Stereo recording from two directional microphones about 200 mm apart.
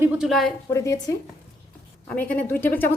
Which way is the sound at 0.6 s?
15° left (ahead or behind).